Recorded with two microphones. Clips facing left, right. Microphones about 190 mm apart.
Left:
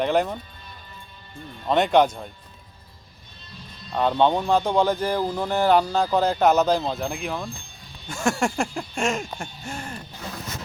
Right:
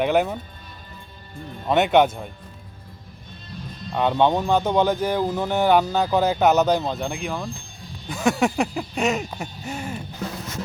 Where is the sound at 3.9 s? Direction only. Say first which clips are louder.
Right 1 dB; 5° right (ahead or behind).